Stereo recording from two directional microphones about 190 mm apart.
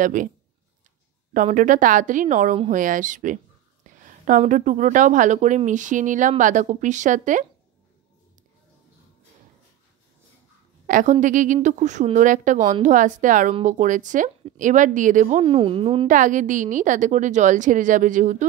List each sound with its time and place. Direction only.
0.0 s a woman's voice: 45° right (ahead or behind)
1.3 s a woman's voice: 45° right (ahead or behind)
10.9 s a woman's voice: 40° right (ahead or behind)
16.1 s a woman's voice: 45° right (ahead or behind)